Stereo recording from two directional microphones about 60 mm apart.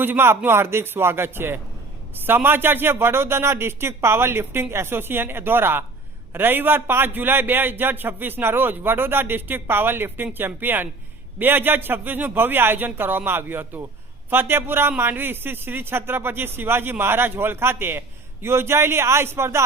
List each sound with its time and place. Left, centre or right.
0.0 s a man's voice: right